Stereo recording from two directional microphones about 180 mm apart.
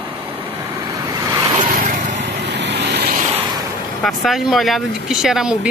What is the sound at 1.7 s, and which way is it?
Vehicle, 50° right (ahead or behind).